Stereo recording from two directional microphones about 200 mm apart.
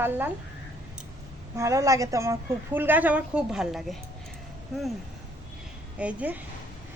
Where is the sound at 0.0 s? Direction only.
10° right (ahead or behind).